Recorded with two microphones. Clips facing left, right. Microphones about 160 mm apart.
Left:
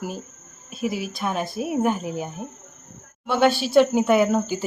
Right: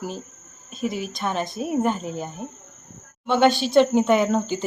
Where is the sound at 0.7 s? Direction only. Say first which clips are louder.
Left 1 dB; 5° left (ahead or behind).